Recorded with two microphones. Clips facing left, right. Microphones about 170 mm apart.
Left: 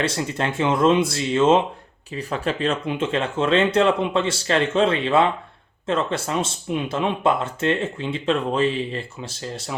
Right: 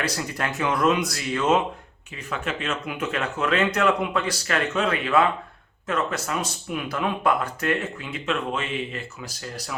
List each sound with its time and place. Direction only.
0.0 s speech: 25° left (ahead or behind)